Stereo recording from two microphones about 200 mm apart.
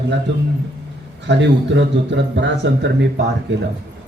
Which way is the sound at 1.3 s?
65° right (ahead or behind).